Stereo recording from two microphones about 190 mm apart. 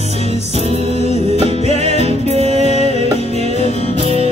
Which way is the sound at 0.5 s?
35° right (ahead or behind).